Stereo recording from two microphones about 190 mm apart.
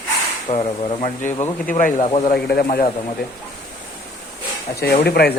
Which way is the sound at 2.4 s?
50° left (ahead or behind).